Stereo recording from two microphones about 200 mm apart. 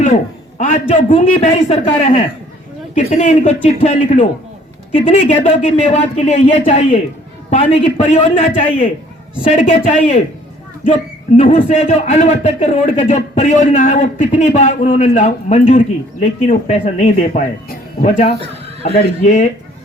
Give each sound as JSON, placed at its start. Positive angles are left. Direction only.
{"t": 0.6, "sound": "a man's voice", "side_deg": 40}
{"t": 11.3, "sound": "a man's voice", "side_deg": 40}